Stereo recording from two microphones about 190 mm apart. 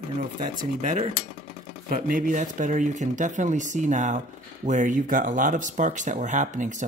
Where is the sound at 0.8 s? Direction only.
40° right (ahead or behind).